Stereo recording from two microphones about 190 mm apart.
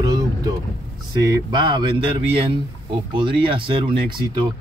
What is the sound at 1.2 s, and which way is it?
A man's voice, 20° right (ahead or behind).